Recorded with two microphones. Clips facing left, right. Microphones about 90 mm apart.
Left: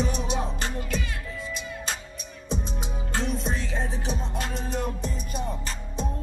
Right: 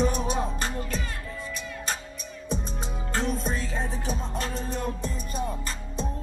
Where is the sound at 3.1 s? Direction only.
40° right (ahead or behind).